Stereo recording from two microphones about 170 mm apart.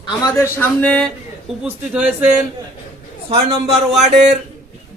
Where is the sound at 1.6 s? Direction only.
5° right (ahead or behind).